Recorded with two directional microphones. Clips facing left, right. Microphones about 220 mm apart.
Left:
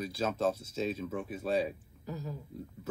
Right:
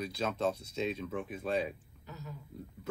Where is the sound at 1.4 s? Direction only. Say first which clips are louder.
Left 3 dB; 35° left (ahead or behind).